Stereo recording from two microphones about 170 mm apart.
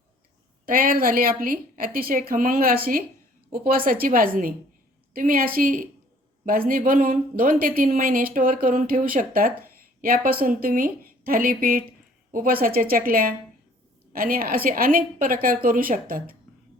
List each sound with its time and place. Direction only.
0.6 s speech: 60° right (ahead or behind)